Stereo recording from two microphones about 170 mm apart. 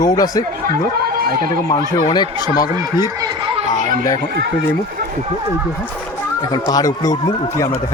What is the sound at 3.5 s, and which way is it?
Chatter, 45° right (ahead or behind).